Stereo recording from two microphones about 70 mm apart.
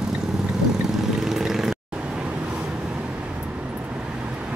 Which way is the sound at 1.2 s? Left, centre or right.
Centre.